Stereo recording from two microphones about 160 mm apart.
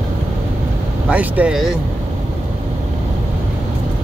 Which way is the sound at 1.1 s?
10° right (ahead or behind).